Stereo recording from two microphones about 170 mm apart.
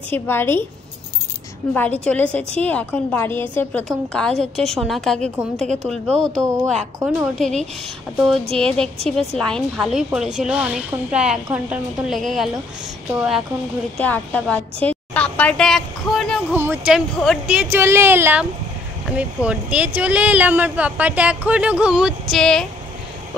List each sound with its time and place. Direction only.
0.1 s a woman's voice: 15° left (ahead or behind)
1.7 s a woman's voice: 10° left (ahead or behind)
6.2 s speech: 20° right (ahead or behind)
8.5 s a woman's voice: 5° left (ahead or behind)
13.9 s a woman's voice: 10° left (ahead or behind)
16.5 s a woman's voice: 10° right (ahead or behind); by 22.7 s 5° left (ahead or behind)